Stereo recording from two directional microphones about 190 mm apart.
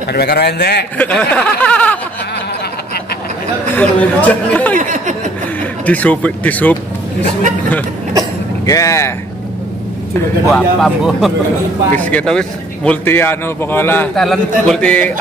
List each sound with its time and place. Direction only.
0.1 s a man's voice: 55° left (ahead or behind)
0.9 s a man's voice: 10° left (ahead or behind)
3.7 s a man's voice: 10° left (ahead or behind)
4.7 s a sound: 40° right (ahead or behind)
5.6 s speech: 10° left (ahead or behind)
8.6 s a man's voice: 15° left (ahead or behind)
10.5 s a man's voice: centre (ahead or behind)